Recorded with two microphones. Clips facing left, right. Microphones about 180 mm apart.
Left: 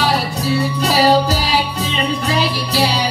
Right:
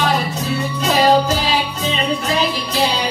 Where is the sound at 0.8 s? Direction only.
35° left (ahead or behind).